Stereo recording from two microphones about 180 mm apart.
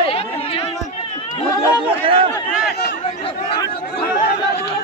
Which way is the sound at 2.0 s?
30° right (ahead or behind).